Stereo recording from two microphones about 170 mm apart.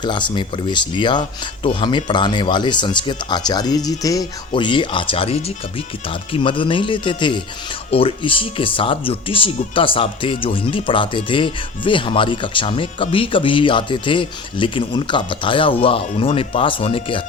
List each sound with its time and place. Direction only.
0.0 s speech: 25° left (ahead or behind)